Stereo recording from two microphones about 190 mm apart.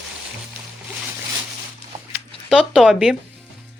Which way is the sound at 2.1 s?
5° right (ahead or behind).